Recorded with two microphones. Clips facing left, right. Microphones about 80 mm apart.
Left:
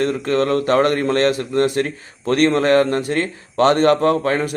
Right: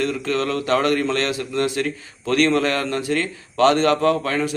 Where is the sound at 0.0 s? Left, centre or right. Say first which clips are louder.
Left 4 dB; left.